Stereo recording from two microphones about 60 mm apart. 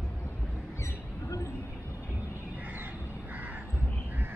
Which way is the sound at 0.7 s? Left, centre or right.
Left.